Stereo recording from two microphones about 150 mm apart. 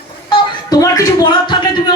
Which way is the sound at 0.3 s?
30° left (ahead or behind).